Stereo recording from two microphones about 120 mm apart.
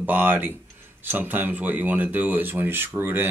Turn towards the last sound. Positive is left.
turn(degrees=-20)  # may be behind; listen again after turning